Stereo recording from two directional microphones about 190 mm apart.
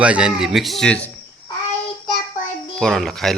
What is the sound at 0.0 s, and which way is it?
Speech, 5° right (ahead or behind).